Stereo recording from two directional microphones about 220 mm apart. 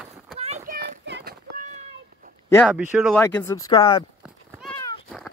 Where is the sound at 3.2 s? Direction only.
10° left (ahead or behind).